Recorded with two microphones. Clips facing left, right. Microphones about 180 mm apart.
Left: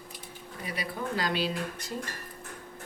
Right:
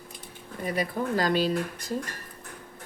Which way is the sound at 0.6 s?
45° right (ahead or behind).